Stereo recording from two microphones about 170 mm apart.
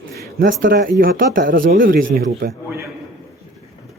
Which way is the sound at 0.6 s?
60° right (ahead or behind).